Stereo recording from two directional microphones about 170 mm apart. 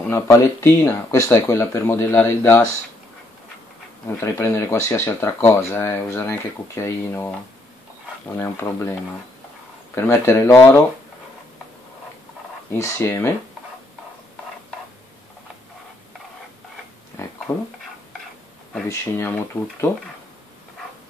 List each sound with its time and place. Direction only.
0.1 s speech: 15° left (ahead or behind)
4.2 s speech: 15° left (ahead or behind)
8.4 s speech: 15° left (ahead or behind)
9.9 s speech: 15° left (ahead or behind)
12.7 s speech: 15° left (ahead or behind)
17.5 s speech: 20° left (ahead or behind)
18.9 s speech: 15° left (ahead or behind)